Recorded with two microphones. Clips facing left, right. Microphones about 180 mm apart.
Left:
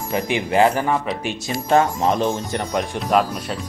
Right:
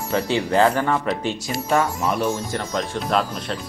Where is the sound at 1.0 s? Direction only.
5° left (ahead or behind).